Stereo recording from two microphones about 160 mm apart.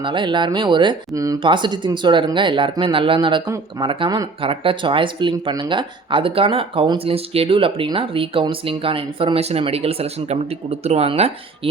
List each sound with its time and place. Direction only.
0.0 s speech: 30° right (ahead or behind)